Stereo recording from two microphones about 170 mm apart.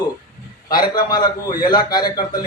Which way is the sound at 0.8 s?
25° left (ahead or behind).